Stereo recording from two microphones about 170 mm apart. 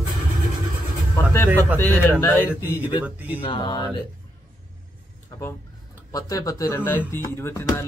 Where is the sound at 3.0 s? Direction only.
10° right (ahead or behind).